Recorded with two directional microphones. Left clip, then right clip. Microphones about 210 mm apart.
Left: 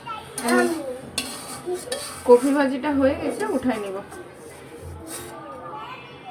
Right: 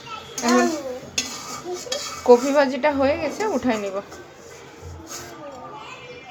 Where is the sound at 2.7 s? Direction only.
50° right (ahead or behind).